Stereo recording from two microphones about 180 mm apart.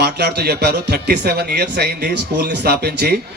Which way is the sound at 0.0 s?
65° right (ahead or behind).